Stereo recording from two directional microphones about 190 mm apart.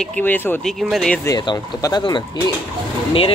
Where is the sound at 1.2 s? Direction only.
20° left (ahead or behind).